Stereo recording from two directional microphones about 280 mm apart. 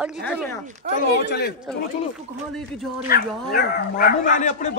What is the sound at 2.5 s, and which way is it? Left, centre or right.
Speech, centre.